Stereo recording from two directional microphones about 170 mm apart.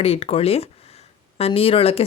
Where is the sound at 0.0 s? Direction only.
35° left (ahead or behind).